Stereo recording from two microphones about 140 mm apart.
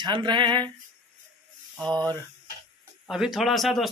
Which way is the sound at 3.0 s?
Centre (ahead or behind).